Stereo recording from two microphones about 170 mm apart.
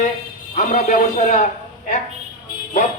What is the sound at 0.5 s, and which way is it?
Speech, 45° left (ahead or behind).